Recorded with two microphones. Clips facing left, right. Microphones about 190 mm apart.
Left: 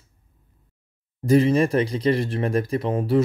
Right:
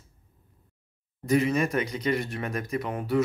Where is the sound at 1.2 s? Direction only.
30° left (ahead or behind).